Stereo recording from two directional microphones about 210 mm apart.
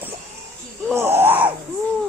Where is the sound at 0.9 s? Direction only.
10° right (ahead or behind).